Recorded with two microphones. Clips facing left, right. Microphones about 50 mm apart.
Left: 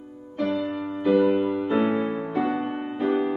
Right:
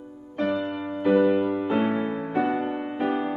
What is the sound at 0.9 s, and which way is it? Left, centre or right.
Music, right.